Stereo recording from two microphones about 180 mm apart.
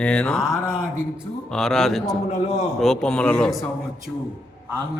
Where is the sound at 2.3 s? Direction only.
40° left (ahead or behind).